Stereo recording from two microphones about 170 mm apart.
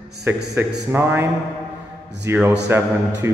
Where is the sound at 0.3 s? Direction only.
10° right (ahead or behind).